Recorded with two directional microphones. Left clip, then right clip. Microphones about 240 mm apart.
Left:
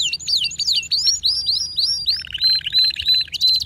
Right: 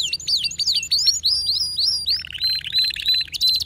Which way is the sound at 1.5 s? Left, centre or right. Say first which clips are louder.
Left 1 dB; centre.